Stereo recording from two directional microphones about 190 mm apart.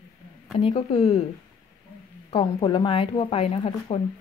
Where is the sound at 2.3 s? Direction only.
30° left (ahead or behind).